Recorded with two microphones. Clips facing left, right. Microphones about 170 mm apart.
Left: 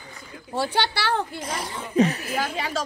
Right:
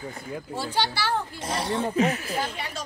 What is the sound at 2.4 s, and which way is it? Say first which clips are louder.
Speech: left 4 dB; 90° left.